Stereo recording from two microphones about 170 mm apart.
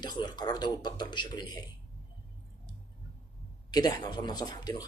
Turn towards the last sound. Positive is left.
turn(degrees=25)  # may be behind; listen again after turning